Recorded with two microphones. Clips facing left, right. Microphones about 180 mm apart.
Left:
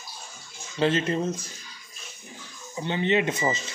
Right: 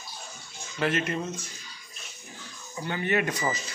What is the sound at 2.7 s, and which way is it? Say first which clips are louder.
Speech: left 3 dB; 25° left (ahead or behind).